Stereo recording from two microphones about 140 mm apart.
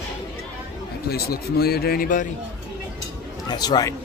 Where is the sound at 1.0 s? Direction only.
90° left.